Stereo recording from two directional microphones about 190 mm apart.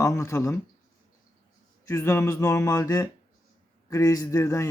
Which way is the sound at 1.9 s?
15° left (ahead or behind).